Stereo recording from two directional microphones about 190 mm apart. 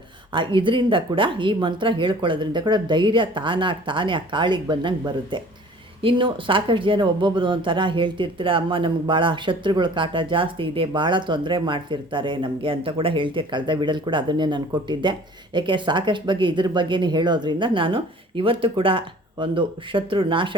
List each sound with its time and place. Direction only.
0.3 s speech: 25° right (ahead or behind)